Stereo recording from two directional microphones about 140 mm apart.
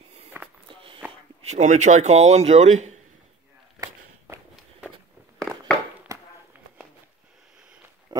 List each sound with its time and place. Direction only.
0.3 s a sound: 15° right (ahead or behind)
0.7 s walk: 40° right (ahead or behind)
1.4 s speech: 55° right (ahead or behind)
8.1 s pig: 25° right (ahead or behind)